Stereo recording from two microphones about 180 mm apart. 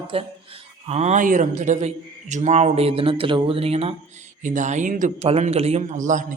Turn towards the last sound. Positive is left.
turn(degrees=-45)  # may be behind; listen again after turning